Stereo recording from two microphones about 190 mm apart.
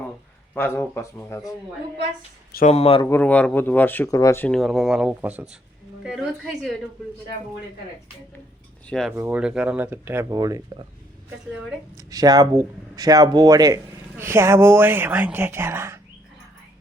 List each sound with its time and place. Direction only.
0.5 s speech: 10° left (ahead or behind)
2.6 s speech: 30° left (ahead or behind)
3.1 s a woman's voice: 10° left (ahead or behind)
8.9 s a woman's voice: centre (ahead or behind)
9.1 s speech: 10° right (ahead or behind)
11.9 s speech: 20° right (ahead or behind)